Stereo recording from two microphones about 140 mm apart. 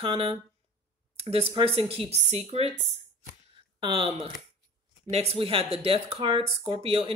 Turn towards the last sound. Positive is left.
turn(degrees=-40)  # may be behind; listen again after turning